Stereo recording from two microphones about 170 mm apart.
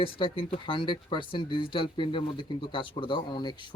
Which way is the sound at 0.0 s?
30° left (ahead or behind).